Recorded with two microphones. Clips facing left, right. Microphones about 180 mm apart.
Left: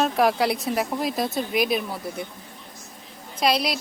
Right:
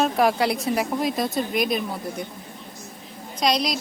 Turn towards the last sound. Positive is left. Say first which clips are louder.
# even
turn(degrees=5)  # may be behind; listen again after turning